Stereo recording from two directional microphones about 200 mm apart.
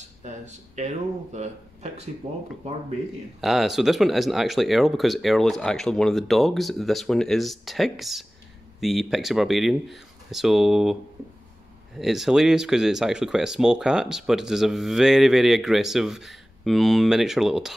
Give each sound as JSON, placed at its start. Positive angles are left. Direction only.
{"t": 0.2, "sound": "speech", "side_deg": -35}
{"t": 3.3, "sound": "speech", "side_deg": 0}
{"t": 12.0, "sound": "speech", "side_deg": 0}